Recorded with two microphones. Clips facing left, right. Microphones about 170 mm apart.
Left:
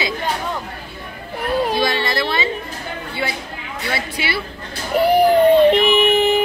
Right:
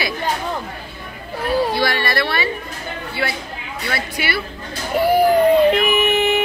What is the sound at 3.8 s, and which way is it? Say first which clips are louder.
Speech: even; 25° left (ahead or behind).